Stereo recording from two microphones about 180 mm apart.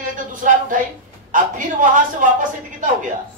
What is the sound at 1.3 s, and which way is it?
A woman's voice, 45° right (ahead or behind).